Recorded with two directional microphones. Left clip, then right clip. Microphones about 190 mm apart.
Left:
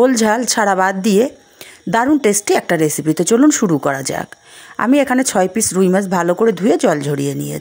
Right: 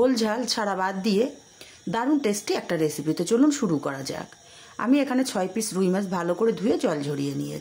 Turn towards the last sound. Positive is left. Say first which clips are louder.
# left 9 dB
turn(degrees=45)  # may be behind; listen again after turning